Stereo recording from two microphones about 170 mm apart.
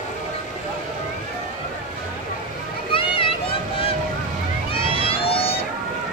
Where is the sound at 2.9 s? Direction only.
30° left (ahead or behind).